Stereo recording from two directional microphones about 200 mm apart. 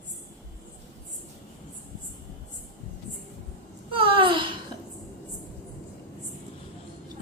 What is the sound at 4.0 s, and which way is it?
Babbling, 25° right (ahead or behind).